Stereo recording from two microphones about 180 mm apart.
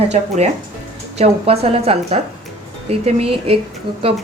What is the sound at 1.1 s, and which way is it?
A woman's voice, 35° right (ahead or behind).